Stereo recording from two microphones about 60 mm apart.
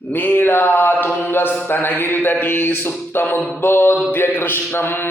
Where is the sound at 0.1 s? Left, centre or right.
Left.